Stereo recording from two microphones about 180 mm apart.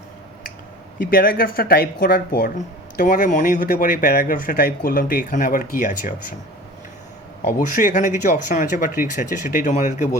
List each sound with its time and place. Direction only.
0.9 s speech: 50° left (ahead or behind)
7.4 s speech: 50° left (ahead or behind)